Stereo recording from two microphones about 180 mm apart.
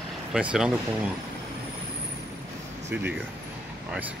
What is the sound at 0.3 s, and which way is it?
Speech, 5° right (ahead or behind).